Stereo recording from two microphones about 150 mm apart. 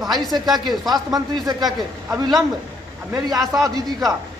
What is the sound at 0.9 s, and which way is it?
A man's voice, 25° right (ahead or behind).